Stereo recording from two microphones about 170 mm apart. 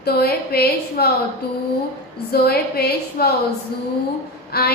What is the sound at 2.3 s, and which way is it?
A woman's voice, 65° left (ahead or behind).